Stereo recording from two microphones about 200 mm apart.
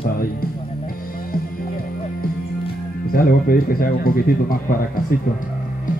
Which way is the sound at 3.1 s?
45° left (ahead or behind).